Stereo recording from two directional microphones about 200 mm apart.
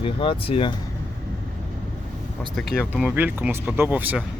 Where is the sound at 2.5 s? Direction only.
Centre (ahead or behind).